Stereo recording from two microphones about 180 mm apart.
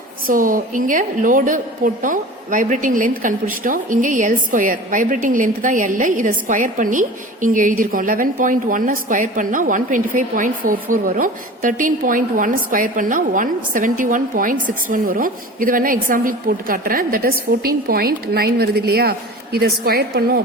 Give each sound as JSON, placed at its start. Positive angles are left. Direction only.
{"t": 0.3, "sound": "a woman's voice", "side_deg": -50}